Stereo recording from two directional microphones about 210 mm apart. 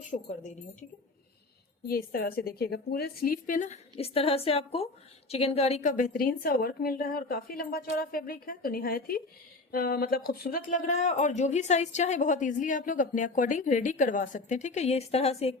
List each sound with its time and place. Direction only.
0.0 s speech: 35° left (ahead or behind)
1.9 s a woman's voice: 45° left (ahead or behind); by 15.5 s 30° left (ahead or behind)